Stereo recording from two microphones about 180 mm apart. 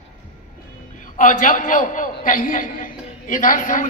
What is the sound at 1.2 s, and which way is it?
A man's voice, 45° left (ahead or behind).